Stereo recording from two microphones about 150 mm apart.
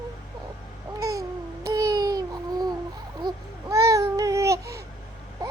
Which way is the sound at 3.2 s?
25° right (ahead or behind).